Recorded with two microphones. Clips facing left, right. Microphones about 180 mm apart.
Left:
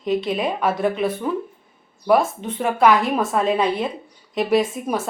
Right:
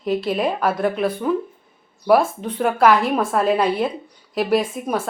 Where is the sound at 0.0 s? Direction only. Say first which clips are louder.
Right 1 dB; centre (ahead or behind).